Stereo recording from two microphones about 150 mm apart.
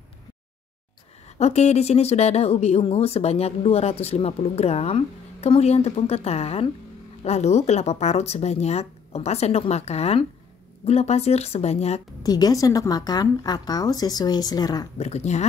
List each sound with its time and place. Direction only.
1.4 s speech: 45° left (ahead or behind)
12.2 s a woman's voice: 25° left (ahead or behind)
15.0 s speech: 45° left (ahead or behind)